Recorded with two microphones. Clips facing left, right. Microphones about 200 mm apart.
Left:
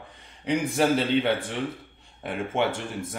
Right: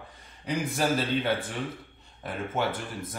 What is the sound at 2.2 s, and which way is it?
Speech, 25° left (ahead or behind).